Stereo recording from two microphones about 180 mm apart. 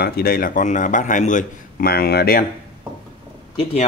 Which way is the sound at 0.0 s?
55° left (ahead or behind).